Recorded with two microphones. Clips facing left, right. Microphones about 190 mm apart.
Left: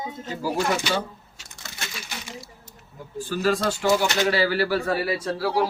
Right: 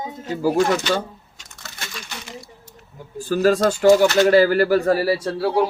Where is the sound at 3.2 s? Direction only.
45° right (ahead or behind).